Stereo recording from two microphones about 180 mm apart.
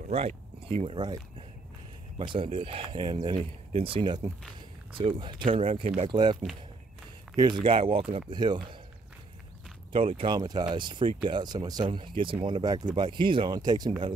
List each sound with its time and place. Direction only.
0.1 s speech: 35° right (ahead or behind)
2.1 s speech: 25° right (ahead or behind)
7.3 s speech: 25° right (ahead or behind)
9.9 s speech: 30° right (ahead or behind)